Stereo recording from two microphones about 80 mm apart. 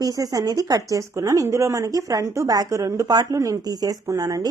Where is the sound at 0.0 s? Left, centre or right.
Right.